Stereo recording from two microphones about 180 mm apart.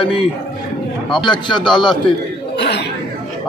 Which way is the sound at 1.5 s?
25° left (ahead or behind).